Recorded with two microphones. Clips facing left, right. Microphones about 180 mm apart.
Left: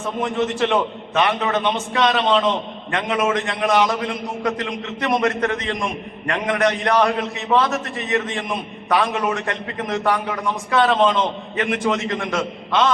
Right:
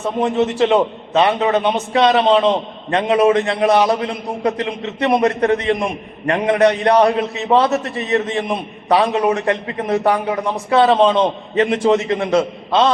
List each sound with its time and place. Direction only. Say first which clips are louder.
0.3 s a man's voice: right 5 dB; 25° right (ahead or behind)